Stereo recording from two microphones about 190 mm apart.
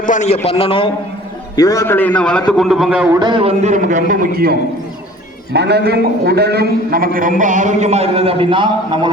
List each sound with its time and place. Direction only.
0.0 s a man's voice: 40° left (ahead or behind)
0.4 s a man's voice: 30° left (ahead or behind)
1.5 s a man's voice: 20° left (ahead or behind); by 3.1 s 5° right (ahead or behind)
3.2 s a man's voice: 25° right (ahead or behind); by 4.3 s 45° right (ahead or behind)
5.5 s a man's voice: 60° right (ahead or behind); by 9.1 s 25° right (ahead or behind)